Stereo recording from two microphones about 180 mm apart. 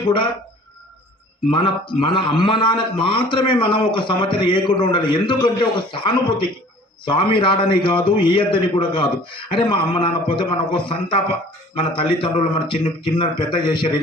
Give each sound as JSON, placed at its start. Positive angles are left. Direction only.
{"t": 1.5, "sound": "a man's voice", "side_deg": 25}
{"t": 12.2, "sound": "a man's voice", "side_deg": 30}